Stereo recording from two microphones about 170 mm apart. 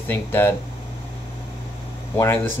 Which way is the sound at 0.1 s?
15° left (ahead or behind).